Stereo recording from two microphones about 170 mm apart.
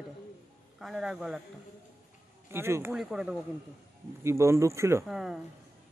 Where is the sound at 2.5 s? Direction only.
15° right (ahead or behind).